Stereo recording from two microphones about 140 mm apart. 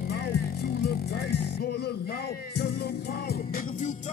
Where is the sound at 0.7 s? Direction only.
90° left.